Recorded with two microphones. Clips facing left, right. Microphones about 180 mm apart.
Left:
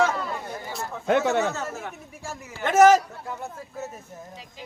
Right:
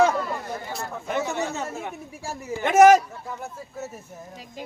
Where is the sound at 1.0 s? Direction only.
75° left (ahead or behind).